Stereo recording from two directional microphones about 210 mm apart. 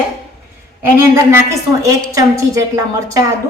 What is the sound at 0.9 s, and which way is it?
A woman's voice, 10° right (ahead or behind).